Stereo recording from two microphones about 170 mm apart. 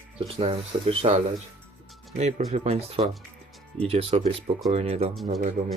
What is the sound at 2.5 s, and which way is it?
Speech, 40° right (ahead or behind).